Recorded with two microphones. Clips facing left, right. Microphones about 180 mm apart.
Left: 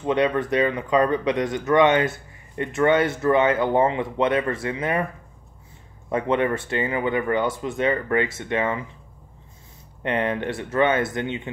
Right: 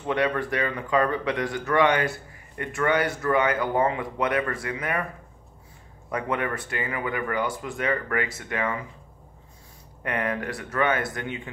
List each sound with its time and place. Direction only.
0.0 s speech: 20° left (ahead or behind)
6.0 s speech: 25° left (ahead or behind)
10.0 s speech: 25° left (ahead or behind)